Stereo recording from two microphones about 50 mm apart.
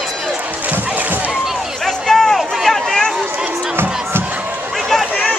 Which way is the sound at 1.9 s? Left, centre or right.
Centre.